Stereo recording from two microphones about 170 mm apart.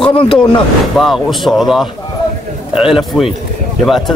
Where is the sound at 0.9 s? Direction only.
Centre (ahead or behind).